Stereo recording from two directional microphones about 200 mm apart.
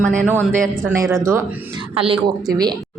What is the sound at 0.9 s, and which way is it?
Speech, 15° right (ahead or behind).